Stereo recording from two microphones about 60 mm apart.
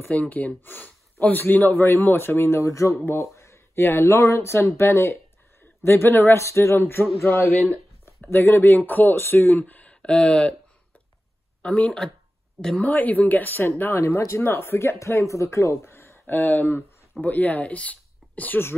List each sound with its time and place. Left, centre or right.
0.1 s speech: left
2.7 s speech: left
3.1 s speech: left
6.3 s speech: left
10.0 s speech: centre
11.6 s speech: centre
12.8 s speech: left
14.0 s speech: left
16.3 s speech: left